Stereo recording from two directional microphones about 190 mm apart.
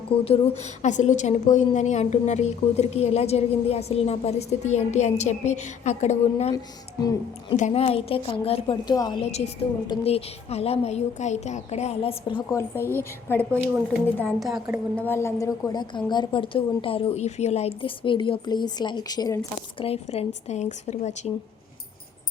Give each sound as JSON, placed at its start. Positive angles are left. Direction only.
{"t": 0.3, "sound": "a woman's voice", "side_deg": 35}
{"t": 7.5, "sound": "a woman's voice", "side_deg": 35}
{"t": 12.5, "sound": "a woman's voice", "side_deg": 15}
{"t": 15.0, "sound": "a woman's voice", "side_deg": 15}
{"t": 19.8, "sound": "a woman's voice", "side_deg": 30}